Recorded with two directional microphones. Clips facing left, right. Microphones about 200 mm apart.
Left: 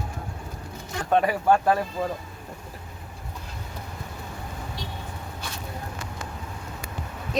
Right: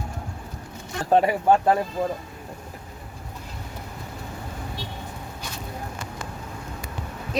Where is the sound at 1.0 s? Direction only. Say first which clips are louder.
Right 3 dB; 30° right (ahead or behind).